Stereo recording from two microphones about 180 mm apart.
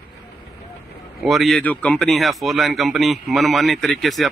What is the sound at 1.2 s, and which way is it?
Speech, centre (ahead or behind).